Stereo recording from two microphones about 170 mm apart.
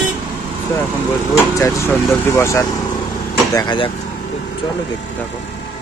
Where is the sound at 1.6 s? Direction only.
15° left (ahead or behind).